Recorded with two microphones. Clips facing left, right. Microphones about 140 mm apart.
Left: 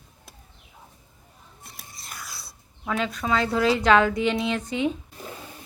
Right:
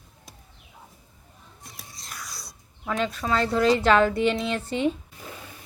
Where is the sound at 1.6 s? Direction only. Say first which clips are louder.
Even; centre (ahead or behind).